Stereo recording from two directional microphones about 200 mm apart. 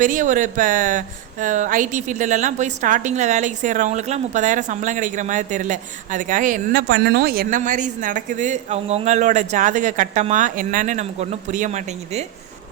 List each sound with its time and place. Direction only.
0.0 s speech: 40° right (ahead or behind)
6.8 s speech: 55° right (ahead or behind); by 12.2 s 35° right (ahead or behind)